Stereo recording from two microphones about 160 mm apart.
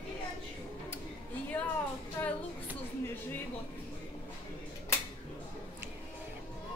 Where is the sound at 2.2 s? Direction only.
15° left (ahead or behind).